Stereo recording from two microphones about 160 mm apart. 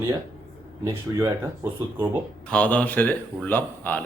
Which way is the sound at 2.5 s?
10° left (ahead or behind).